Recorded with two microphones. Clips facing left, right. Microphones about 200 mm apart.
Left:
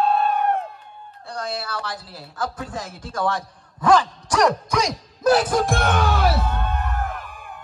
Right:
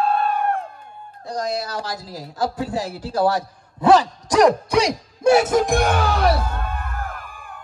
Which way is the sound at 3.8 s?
35° right (ahead or behind).